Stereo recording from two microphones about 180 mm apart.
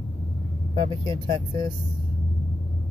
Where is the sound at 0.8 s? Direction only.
25° right (ahead or behind).